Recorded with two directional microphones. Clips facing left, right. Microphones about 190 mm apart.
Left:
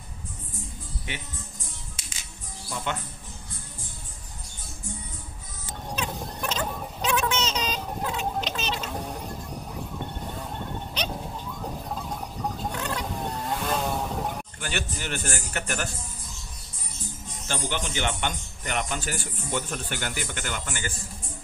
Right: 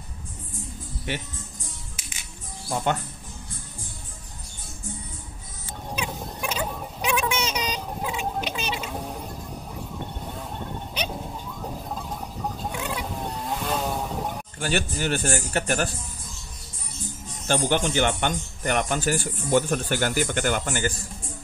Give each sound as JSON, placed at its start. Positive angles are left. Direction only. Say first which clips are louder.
{"t": 2.7, "sound": "speech", "louder": "right 6 dB", "side_deg": -45}
{"t": 5.9, "sound": "a sound", "louder": "even", "side_deg": -5}
{"t": 11.6, "sound": "a sound", "louder": "right 1 dB", "side_deg": -5}
{"t": 12.7, "sound": "vehicle", "louder": "even", "side_deg": -10}
{"t": 14.6, "sound": "speech", "louder": "right 9 dB", "side_deg": -35}
{"t": 17.5, "sound": "speech", "louder": "right 8 dB", "side_deg": -45}